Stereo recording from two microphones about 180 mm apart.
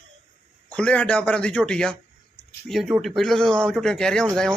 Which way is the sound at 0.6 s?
5° left (ahead or behind).